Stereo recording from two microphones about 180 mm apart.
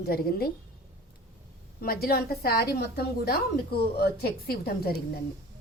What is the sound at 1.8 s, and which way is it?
A woman's voice, 55° left (ahead or behind).